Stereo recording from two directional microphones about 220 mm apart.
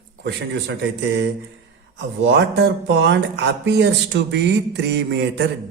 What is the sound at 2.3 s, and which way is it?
Speech, 50° right (ahead or behind).